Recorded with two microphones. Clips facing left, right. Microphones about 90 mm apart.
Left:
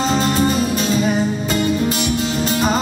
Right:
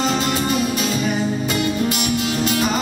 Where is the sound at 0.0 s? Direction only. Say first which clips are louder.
Left 3 dB; 35° left (ahead or behind).